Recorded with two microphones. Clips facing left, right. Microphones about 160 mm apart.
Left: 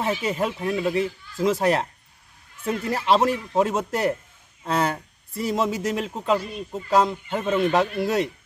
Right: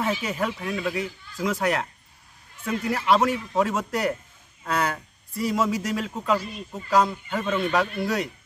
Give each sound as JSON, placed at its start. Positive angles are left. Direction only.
{"t": 0.0, "sound": "speech", "side_deg": 25}